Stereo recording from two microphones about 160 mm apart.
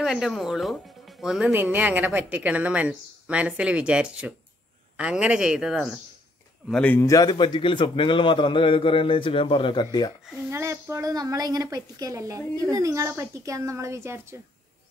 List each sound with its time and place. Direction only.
0.0 s a woman's voice: centre (ahead or behind)
6.7 s speech: 10° left (ahead or behind)
7.0 s a man's voice: 20° left (ahead or behind)
10.5 s a woman's voice: 15° right (ahead or behind)